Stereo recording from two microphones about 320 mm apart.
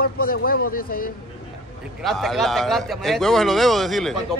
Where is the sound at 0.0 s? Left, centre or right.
Left.